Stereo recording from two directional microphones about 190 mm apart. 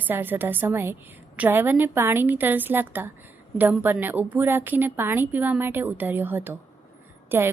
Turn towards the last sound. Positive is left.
turn(degrees=-10)  # may be behind; listen again after turning